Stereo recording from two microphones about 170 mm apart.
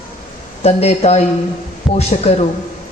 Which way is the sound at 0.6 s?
40° left (ahead or behind).